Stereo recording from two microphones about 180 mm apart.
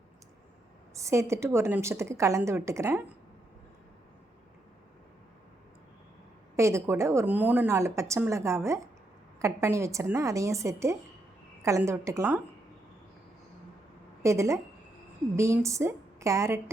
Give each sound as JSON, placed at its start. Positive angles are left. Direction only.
{"t": 0.9, "sound": "a woman's voice", "side_deg": -15}
{"t": 6.6, "sound": "a woman's voice", "side_deg": -15}
{"t": 14.2, "sound": "a woman's voice", "side_deg": -15}